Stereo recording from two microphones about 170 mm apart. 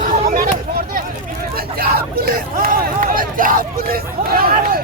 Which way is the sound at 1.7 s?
60° right (ahead or behind).